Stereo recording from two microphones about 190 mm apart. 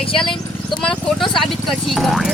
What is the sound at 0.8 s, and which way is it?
Speech, 5° left (ahead or behind).